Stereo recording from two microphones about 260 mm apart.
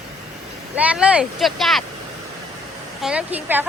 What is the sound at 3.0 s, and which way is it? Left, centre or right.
Speech, centre.